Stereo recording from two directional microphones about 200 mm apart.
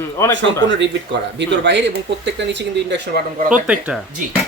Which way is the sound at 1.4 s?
60° right (ahead or behind).